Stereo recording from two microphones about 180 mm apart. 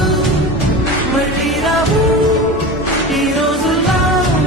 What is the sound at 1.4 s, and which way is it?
Music, centre (ahead or behind).